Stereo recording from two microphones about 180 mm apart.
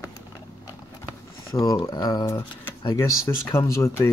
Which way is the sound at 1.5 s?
20° left (ahead or behind).